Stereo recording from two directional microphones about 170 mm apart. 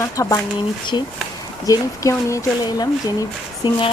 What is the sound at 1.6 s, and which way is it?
A woman's voice, 20° left (ahead or behind).